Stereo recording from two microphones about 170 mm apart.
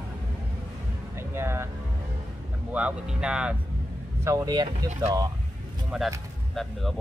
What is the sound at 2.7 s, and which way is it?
Speech, 5° right (ahead or behind).